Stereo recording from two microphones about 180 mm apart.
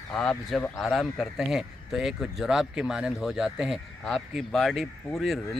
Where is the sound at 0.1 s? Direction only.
5° left (ahead or behind).